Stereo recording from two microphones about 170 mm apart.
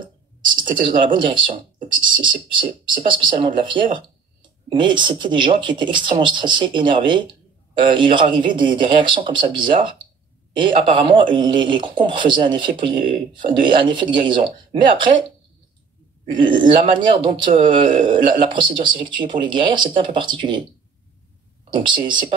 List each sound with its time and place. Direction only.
0.8 s speech: 30° right (ahead or behind)
16.3 s speech: 30° right (ahead or behind)
21.6 s speech: 30° right (ahead or behind)